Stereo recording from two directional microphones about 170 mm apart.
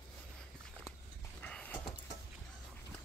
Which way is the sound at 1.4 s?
10° left (ahead or behind).